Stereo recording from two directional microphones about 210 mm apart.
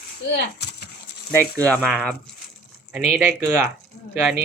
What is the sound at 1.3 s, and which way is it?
Speech, 5° left (ahead or behind).